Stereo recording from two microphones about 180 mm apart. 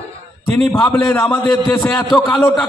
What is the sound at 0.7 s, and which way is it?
A man's voice, 10° left (ahead or behind).